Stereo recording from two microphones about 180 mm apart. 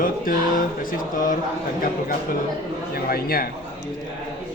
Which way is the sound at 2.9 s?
55° left (ahead or behind).